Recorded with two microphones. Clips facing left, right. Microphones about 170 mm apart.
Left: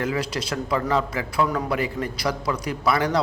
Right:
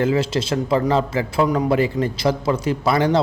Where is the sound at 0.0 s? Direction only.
25° right (ahead or behind).